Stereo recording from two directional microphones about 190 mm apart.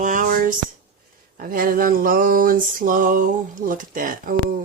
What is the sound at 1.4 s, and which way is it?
Speech, 45° right (ahead or behind).